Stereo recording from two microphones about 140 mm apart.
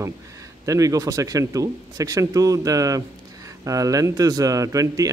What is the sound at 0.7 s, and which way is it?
A man's voice, 25° right (ahead or behind).